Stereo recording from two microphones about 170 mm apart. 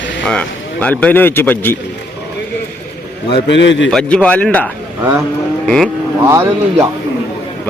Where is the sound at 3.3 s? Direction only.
90° left.